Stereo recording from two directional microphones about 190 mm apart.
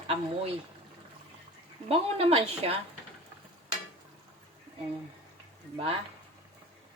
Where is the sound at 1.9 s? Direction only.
30° right (ahead or behind).